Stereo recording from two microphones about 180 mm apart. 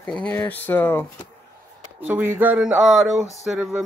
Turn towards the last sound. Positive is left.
turn(degrees=-5)  # may be behind; listen again after turning